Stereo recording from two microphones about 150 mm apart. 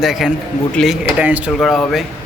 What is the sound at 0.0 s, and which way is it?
Speech, centre (ahead or behind).